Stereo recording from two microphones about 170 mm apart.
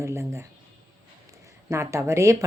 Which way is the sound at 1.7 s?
15° right (ahead or behind).